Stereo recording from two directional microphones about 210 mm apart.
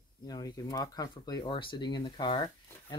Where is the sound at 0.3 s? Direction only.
20° left (ahead or behind).